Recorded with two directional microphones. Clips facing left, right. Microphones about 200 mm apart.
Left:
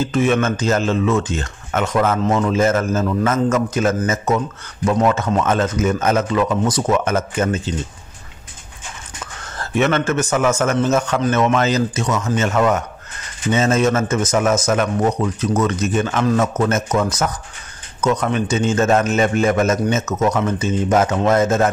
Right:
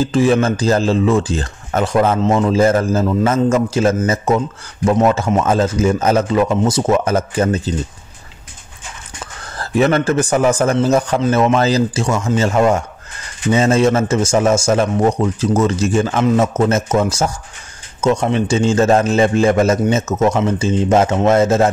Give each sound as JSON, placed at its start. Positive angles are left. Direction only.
{"t": 0.0, "sound": "speech", "side_deg": -30}
{"t": 9.2, "sound": "speech", "side_deg": -35}